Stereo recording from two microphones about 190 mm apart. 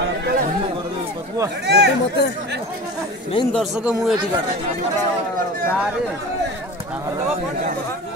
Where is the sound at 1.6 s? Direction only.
60° right (ahead or behind).